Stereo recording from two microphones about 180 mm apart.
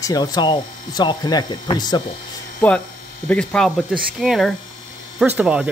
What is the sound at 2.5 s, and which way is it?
Speech, 10° left (ahead or behind).